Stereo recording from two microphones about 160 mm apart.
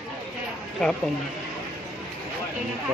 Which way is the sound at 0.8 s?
5° left (ahead or behind).